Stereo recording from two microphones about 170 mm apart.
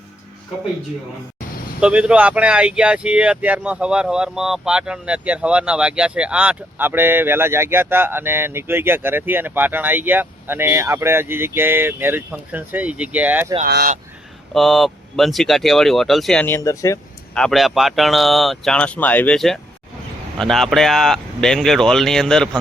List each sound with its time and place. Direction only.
1.8 s speech: 5° right (ahead or behind)
13.7 s speech: 70° right (ahead or behind)
14.5 s speech: centre (ahead or behind)
16.6 s speech: 20° left (ahead or behind)
17.3 s speech: centre (ahead or behind)